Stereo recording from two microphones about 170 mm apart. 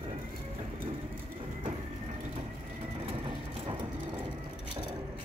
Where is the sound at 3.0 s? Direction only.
35° right (ahead or behind).